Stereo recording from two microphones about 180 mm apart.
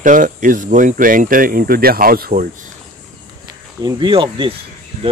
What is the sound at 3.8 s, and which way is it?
Speech, 25° right (ahead or behind).